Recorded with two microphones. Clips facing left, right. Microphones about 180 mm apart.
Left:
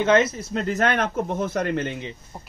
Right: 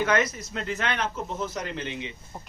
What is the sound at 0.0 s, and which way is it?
Speech, 25° left (ahead or behind).